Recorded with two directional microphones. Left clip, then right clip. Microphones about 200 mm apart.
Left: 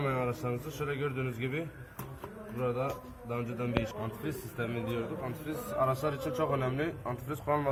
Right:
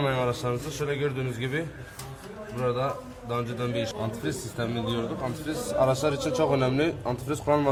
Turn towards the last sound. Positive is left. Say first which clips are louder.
# right 7 dB
turn(degrees=-20)  # may be behind; listen again after turning